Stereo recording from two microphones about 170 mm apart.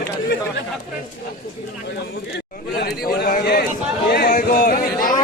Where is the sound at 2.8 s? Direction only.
65° left (ahead or behind).